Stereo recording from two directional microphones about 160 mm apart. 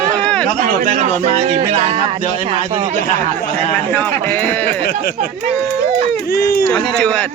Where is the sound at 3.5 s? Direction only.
10° left (ahead or behind).